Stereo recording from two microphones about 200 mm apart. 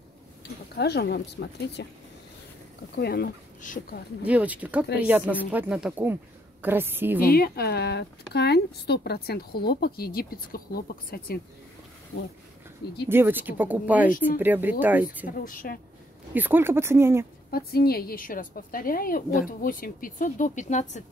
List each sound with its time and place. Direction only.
0.7 s speech: 55° left (ahead or behind)
3.0 s a woman's voice: 50° left (ahead or behind)
4.2 s speech: 5° right (ahead or behind)
7.2 s a woman's voice: 50° left (ahead or behind)
13.1 s speech: 10° right (ahead or behind)
15.2 s a woman's voice: 45° left (ahead or behind)
16.3 s speech: 10° right (ahead or behind)
17.5 s a woman's voice: 50° left (ahead or behind)